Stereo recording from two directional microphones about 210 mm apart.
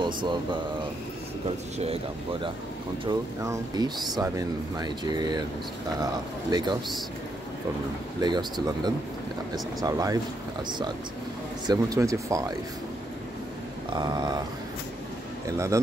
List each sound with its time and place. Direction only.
0.0 s speech: 20° right (ahead or behind)
3.1 s speech: 20° right (ahead or behind)
6.5 s speech: 20° right (ahead or behind)
8.2 s speech: 20° right (ahead or behind)
11.6 s speech: 20° right (ahead or behind)
13.9 s speech: 20° right (ahead or behind)
15.5 s speech: 15° right (ahead or behind)